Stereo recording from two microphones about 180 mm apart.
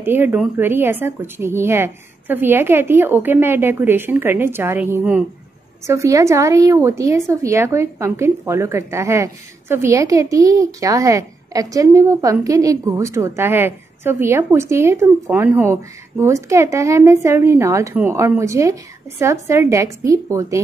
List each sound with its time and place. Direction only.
0.0 s a woman's voice: 10° right (ahead or behind)